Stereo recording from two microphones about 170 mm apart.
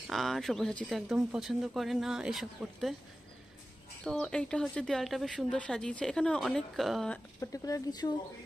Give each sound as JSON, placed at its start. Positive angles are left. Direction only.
{"t": 0.0, "sound": "speech", "side_deg": 0}
{"t": 4.0, "sound": "speech", "side_deg": 5}
{"t": 7.3, "sound": "speech", "side_deg": 20}